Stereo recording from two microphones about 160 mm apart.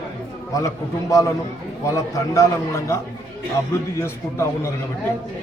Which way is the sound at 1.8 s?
20° left (ahead or behind).